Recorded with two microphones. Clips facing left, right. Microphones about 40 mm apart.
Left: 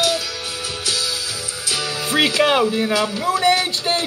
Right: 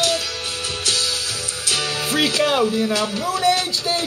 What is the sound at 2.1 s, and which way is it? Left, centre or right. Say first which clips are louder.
Music: left 3 dB; left.